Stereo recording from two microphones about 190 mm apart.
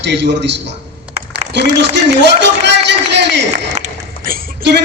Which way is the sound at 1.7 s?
65° right (ahead or behind).